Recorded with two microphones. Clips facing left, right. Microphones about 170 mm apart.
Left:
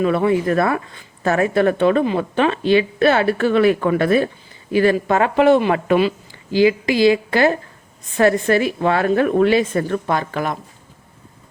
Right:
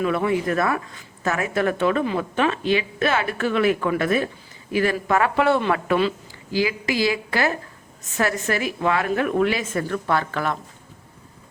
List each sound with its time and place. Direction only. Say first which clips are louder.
0.0 s a woman's voice: left 5 dB; 30° left (ahead or behind)
10.1 s speech: left 2 dB; 15° left (ahead or behind)